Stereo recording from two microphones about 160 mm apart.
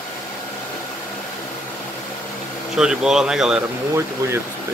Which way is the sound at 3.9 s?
15° right (ahead or behind).